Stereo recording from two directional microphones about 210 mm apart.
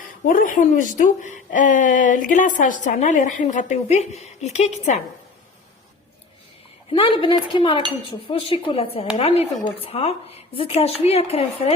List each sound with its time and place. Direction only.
0.3 s a woman's voice: 40° left (ahead or behind)
7.2 s a woman's voice: 25° left (ahead or behind)